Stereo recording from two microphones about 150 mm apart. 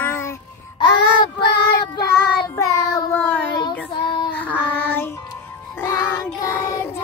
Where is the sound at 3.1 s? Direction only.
10° left (ahead or behind).